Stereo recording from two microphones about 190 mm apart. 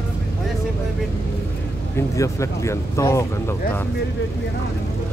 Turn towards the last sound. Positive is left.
turn(degrees=15)  # may be behind; listen again after turning